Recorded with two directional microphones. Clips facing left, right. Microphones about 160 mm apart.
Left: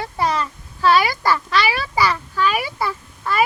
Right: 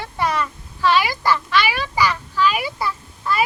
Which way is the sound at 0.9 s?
40° left (ahead or behind).